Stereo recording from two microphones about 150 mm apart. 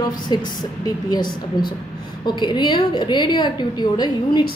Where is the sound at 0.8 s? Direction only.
25° left (ahead or behind).